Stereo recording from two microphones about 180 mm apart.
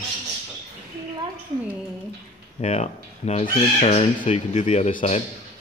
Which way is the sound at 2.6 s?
35° left (ahead or behind).